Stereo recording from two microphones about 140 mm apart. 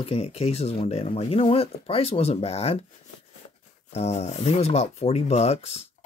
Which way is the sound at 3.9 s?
50° left (ahead or behind).